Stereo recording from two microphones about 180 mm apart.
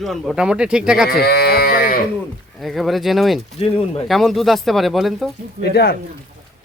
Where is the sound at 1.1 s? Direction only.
60° left (ahead or behind).